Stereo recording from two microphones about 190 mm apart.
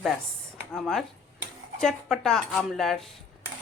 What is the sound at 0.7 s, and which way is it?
Speech, centre (ahead or behind).